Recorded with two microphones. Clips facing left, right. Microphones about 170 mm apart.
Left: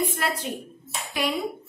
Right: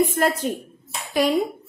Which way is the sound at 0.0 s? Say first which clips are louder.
Right 7 dB; 50° right (ahead or behind).